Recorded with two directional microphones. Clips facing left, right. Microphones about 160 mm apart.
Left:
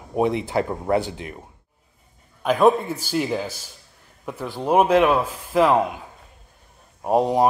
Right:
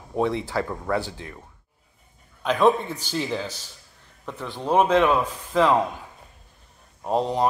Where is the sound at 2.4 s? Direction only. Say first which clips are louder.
Left 3 dB; 10° left (ahead or behind).